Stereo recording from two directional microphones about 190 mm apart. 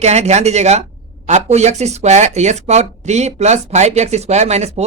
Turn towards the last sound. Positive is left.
turn(degrees=-35)  # may be behind; listen again after turning